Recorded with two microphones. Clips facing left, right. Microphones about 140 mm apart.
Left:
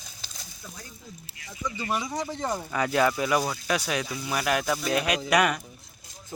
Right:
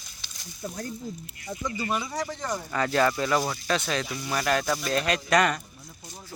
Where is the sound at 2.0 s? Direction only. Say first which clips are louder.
Left 1 dB; 20° left (ahead or behind).